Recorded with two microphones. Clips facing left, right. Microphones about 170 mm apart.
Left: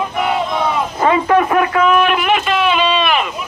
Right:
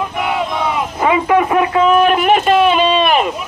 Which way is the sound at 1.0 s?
10° right (ahead or behind).